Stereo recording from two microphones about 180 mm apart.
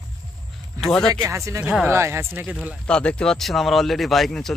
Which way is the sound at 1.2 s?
15° right (ahead or behind).